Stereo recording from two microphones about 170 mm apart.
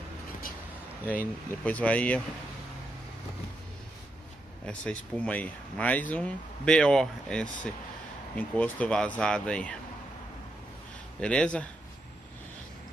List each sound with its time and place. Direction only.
1.2 s speech: 10° left (ahead or behind)
4.6 s speech: 5° left (ahead or behind)
11.1 s speech: 5° left (ahead or behind)